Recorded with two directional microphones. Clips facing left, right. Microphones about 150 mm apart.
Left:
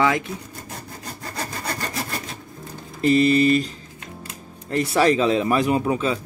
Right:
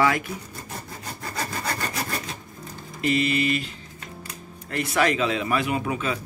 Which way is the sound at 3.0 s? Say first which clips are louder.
Left 7 dB; 40° left (ahead or behind).